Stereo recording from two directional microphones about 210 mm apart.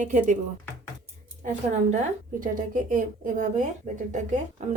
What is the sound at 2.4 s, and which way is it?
Speech, 40° right (ahead or behind).